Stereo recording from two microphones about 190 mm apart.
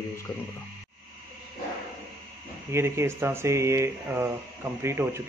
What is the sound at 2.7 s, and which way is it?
Speech, 15° right (ahead or behind).